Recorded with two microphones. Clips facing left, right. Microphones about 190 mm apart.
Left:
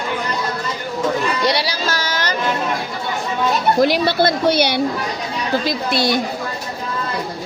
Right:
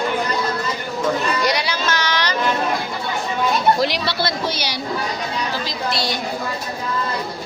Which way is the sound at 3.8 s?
50° left (ahead or behind).